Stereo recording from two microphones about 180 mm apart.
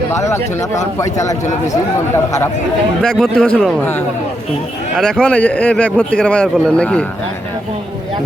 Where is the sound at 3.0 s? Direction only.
Centre (ahead or behind).